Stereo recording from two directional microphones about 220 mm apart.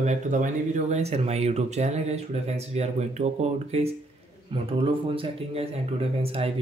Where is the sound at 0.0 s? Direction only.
35° right (ahead or behind).